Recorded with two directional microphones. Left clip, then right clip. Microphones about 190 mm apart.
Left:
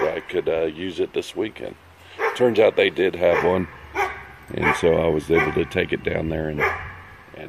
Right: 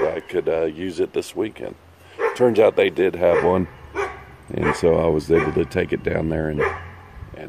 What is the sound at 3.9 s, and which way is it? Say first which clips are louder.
Dog: left 2 dB; 35° left (ahead or behind).